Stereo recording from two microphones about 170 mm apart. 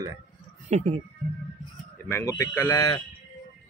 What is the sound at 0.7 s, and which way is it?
Speech, 40° right (ahead or behind).